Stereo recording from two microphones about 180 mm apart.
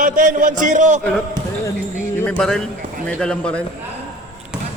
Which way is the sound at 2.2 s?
5° left (ahead or behind).